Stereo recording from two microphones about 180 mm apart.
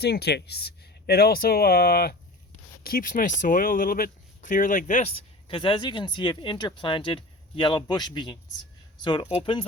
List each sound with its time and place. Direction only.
0.0 s speech: 65° left (ahead or behind); by 5.1 s 45° left (ahead or behind)
5.1 s speech: 30° left (ahead or behind)